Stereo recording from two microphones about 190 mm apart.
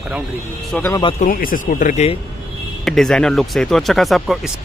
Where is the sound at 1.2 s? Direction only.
45° left (ahead or behind).